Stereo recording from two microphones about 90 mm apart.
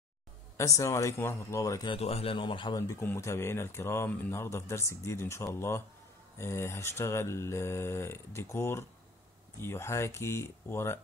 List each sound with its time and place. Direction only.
0.6 s speech: 35° left (ahead or behind)
1.9 s a man's voice: 65° left (ahead or behind)
3.0 s speech: 30° left (ahead or behind)